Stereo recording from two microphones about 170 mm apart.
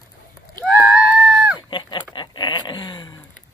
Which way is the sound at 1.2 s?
5° right (ahead or behind).